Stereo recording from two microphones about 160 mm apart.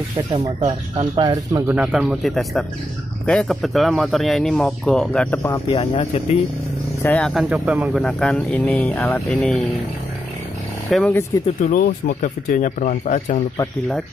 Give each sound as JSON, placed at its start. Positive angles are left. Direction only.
{"t": 0.3, "sound": "speech", "side_deg": -45}
{"t": 1.1, "sound": "speech", "side_deg": -30}
{"t": 1.7, "sound": "speech", "side_deg": -5}
{"t": 5.4, "sound": "speech", "side_deg": 25}
{"t": 5.8, "sound": "speech", "side_deg": 40}
{"t": 7.0, "sound": "speech", "side_deg": 15}
{"t": 7.2, "sound": "speech", "side_deg": 0}
{"t": 8.0, "sound": "speech", "side_deg": 5}
{"t": 10.9, "sound": "speech", "side_deg": 0}
{"t": 11.7, "sound": "speech", "side_deg": 60}